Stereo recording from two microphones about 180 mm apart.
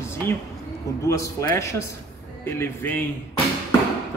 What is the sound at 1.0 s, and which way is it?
Speech, 15° left (ahead or behind).